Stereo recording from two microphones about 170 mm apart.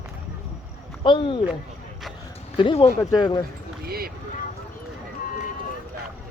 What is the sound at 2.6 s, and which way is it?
Speech, 35° left (ahead or behind).